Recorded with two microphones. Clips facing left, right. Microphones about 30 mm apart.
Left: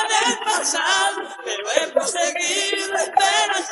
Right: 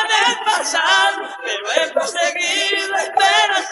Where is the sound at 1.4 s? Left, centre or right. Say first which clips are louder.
Right 4 dB; right.